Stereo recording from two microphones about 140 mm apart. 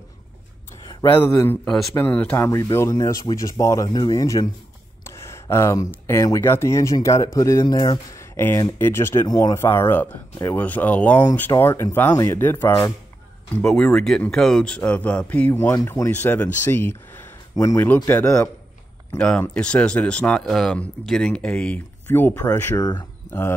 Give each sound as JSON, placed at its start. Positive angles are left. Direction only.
{"t": 0.8, "sound": "a man's voice", "side_deg": 30}
{"t": 1.4, "sound": "speech", "side_deg": 10}
{"t": 7.6, "sound": "speech", "side_deg": 30}
{"t": 8.2, "sound": "a sound", "side_deg": 15}
{"t": 8.7, "sound": "speech", "side_deg": 15}
{"t": 16.6, "sound": "a sound", "side_deg": 15}
{"t": 17.8, "sound": "speech", "side_deg": 15}
{"t": 19.1, "sound": "speech", "side_deg": 5}
{"t": 22.8, "sound": "speech", "side_deg": 30}